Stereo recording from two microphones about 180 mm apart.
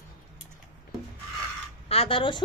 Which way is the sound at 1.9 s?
30° left (ahead or behind).